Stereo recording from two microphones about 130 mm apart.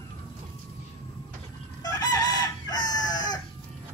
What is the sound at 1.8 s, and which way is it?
Chicken, 30° left (ahead or behind).